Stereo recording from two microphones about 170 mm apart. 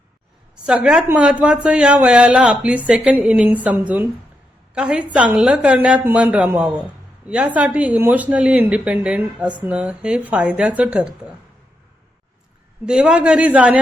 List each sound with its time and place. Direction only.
0.6 s a woman's voice: 5° right (ahead or behind)
12.8 s speech: 5° right (ahead or behind)